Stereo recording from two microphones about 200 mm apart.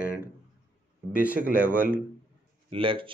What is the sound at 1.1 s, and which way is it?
Speech, 5° right (ahead or behind).